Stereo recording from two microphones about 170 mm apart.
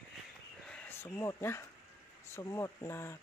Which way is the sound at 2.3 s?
20° left (ahead or behind).